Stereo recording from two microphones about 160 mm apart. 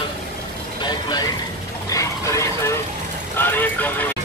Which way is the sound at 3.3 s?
10° left (ahead or behind).